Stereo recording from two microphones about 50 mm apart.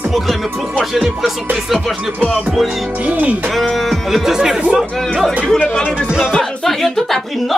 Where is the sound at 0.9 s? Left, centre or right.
Centre.